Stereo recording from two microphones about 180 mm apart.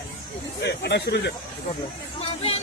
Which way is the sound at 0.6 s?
70° left (ahead or behind).